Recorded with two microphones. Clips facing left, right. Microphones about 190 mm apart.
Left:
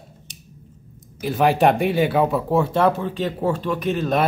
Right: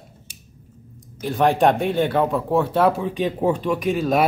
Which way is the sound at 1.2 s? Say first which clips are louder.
Even; 5° left (ahead or behind).